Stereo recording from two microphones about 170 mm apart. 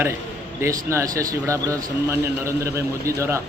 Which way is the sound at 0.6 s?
15° right (ahead or behind).